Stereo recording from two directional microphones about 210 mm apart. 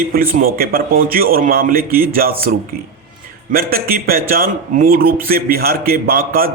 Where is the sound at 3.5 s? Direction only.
45° right (ahead or behind).